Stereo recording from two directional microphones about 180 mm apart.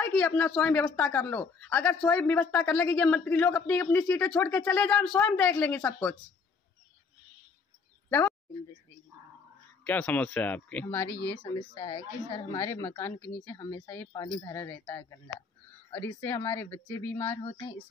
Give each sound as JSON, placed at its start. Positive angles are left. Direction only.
{"t": 0.0, "sound": "a woman's voice", "side_deg": 5}
{"t": 9.8, "sound": "a woman's voice", "side_deg": 10}
{"t": 11.7, "sound": "a woman's voice", "side_deg": 25}
{"t": 17.4, "sound": "a sound", "side_deg": 35}